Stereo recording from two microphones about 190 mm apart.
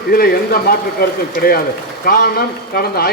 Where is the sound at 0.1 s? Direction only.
55° left (ahead or behind).